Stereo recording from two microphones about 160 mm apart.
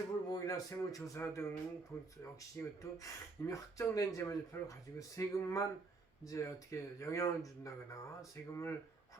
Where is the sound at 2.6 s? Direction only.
15° left (ahead or behind).